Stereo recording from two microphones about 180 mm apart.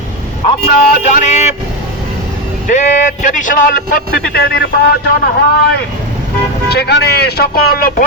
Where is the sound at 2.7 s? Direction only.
45° left (ahead or behind); by 4.6 s 60° left (ahead or behind).